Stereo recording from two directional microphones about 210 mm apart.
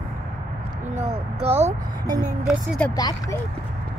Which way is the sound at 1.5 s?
15° right (ahead or behind).